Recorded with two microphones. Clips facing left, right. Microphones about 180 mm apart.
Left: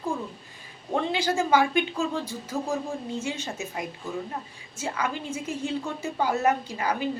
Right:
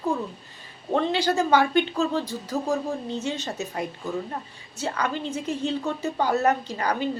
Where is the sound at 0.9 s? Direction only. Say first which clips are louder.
Right 3 dB; 10° left (ahead or behind).